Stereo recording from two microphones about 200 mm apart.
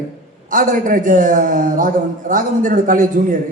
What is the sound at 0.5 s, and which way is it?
A man's voice, 40° right (ahead or behind).